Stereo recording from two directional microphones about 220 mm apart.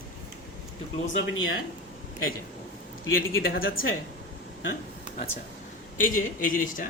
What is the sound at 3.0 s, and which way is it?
Speech, 65° left (ahead or behind).